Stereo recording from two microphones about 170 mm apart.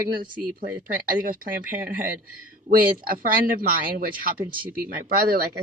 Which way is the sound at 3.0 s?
55° right (ahead or behind).